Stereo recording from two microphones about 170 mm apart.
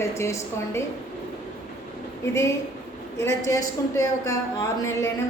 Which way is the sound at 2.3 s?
15° left (ahead or behind).